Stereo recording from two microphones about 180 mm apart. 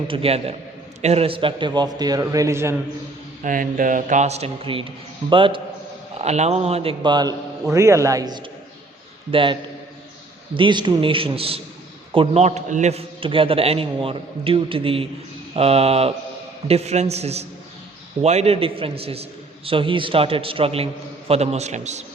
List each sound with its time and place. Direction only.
0.1 s a man's voice: 35° right (ahead or behind); by 2.7 s 15° right (ahead or behind)
3.4 s a man's voice: 50° right (ahead or behind); by 5.6 s 30° right (ahead or behind)
6.1 s a man's voice: 40° right (ahead or behind)